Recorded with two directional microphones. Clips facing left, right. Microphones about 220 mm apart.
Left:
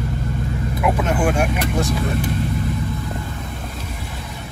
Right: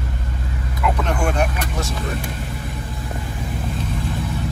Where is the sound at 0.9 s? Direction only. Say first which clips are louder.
Left 2 dB; 5° left (ahead or behind).